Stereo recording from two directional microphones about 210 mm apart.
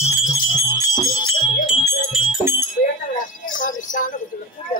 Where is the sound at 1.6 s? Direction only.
10° right (ahead or behind).